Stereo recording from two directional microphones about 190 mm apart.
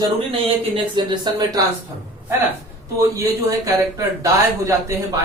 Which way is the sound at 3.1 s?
20° right (ahead or behind).